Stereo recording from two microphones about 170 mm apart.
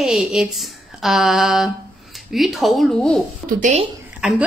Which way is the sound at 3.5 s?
45° right (ahead or behind).